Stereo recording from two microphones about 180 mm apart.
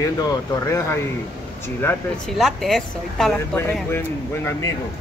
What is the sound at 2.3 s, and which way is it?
A woman's voice, centre (ahead or behind).